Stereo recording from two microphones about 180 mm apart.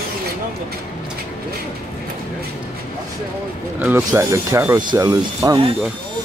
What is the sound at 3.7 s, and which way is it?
Speech, 10° right (ahead or behind).